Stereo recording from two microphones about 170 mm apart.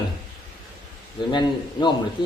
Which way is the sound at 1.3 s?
25° left (ahead or behind).